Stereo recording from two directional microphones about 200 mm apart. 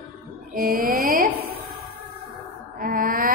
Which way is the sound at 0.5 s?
45° right (ahead or behind).